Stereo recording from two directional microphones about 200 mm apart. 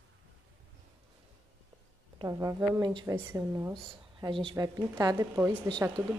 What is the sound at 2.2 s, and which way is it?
A woman's voice, 15° right (ahead or behind).